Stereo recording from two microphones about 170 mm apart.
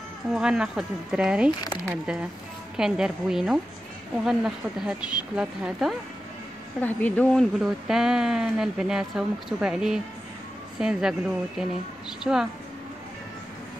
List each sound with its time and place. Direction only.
0.3 s a woman's voice: 5° right (ahead or behind)
1.6 s speech: 20° left (ahead or behind)
2.8 s a woman's voice: 5° right (ahead or behind)
6.8 s speech: 10° left (ahead or behind)
7.5 s a woman's voice: 5° right (ahead or behind)